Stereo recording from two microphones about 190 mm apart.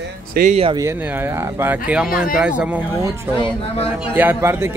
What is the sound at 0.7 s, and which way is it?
Speech, 15° right (ahead or behind).